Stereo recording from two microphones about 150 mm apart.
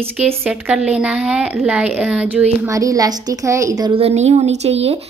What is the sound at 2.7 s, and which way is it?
Speech, 20° right (ahead or behind).